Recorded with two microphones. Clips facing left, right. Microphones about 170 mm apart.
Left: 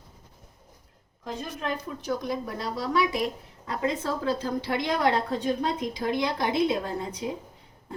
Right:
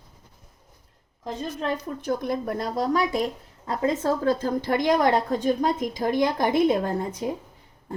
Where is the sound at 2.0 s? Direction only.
55° right (ahead or behind).